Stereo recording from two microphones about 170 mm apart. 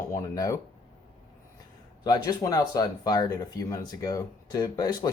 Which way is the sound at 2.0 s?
20° left (ahead or behind).